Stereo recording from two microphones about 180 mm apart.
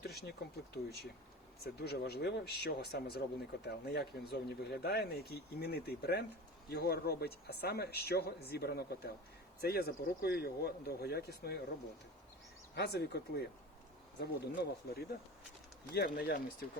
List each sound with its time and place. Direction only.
0.0 s speech: 65° left (ahead or behind)
12.7 s speech: 65° left (ahead or behind)